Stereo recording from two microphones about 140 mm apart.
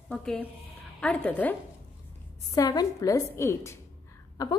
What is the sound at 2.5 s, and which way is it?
A woman's voice, 25° left (ahead or behind).